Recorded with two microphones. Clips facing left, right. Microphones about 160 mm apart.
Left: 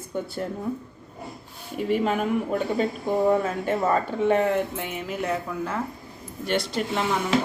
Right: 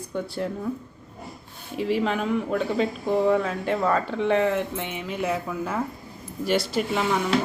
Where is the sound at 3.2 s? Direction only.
45° left (ahead or behind).